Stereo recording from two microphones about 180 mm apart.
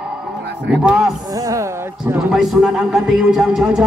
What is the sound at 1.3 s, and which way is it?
Speech, 20° right (ahead or behind).